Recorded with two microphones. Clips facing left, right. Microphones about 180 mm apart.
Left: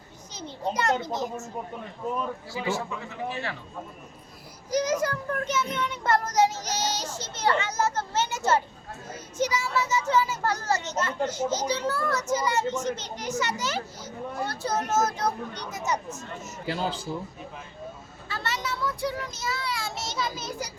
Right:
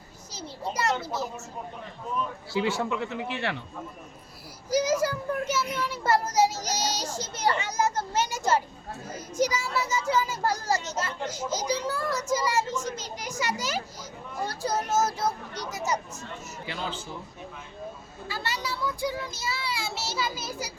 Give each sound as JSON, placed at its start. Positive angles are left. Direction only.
{"t": 0.3, "sound": "a child's voice", "side_deg": -5}
{"t": 2.5, "sound": "a man's voice", "side_deg": -75}
{"t": 4.7, "sound": "a child's voice", "side_deg": -10}
{"t": 16.6, "sound": "speech", "side_deg": 40}
{"t": 18.3, "sound": "children playing", "side_deg": -10}
{"t": 18.8, "sound": "child singing", "side_deg": -10}
{"t": 19.3, "sound": "a child's voice", "side_deg": -30}
{"t": 19.8, "sound": "a child's voice", "side_deg": -5}